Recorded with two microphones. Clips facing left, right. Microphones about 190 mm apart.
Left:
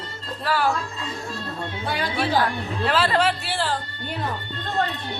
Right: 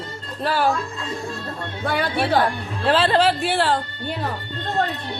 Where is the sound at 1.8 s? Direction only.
55° right (ahead or behind).